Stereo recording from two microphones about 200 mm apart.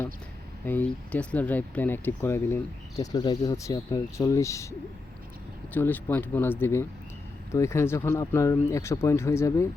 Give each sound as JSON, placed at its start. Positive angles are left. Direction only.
{"t": 0.6, "sound": "speech", "side_deg": 10}
{"t": 5.7, "sound": "speech", "side_deg": 10}